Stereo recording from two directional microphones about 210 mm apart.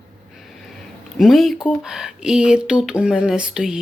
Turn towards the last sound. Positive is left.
turn(degrees=-5)  # may be behind; listen again after turning